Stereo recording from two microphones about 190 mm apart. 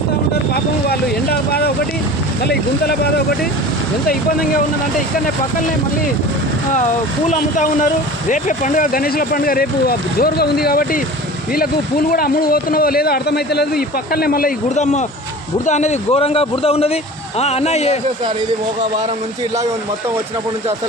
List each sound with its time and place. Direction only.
0.9 s vehicle: 55° left (ahead or behind)
2.5 s speech: 55° left (ahead or behind)
7.3 s speech: 45° left (ahead or behind)
12.1 s a man's voice: 50° left (ahead or behind); by 18.0 s 35° left (ahead or behind)